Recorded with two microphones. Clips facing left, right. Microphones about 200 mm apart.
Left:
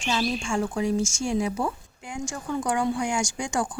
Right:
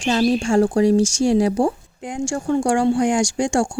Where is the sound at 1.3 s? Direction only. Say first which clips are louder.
Right 8 dB; 75° right (ahead or behind).